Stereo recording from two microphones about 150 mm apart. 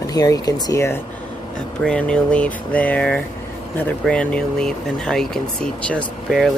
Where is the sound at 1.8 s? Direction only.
5° left (ahead or behind).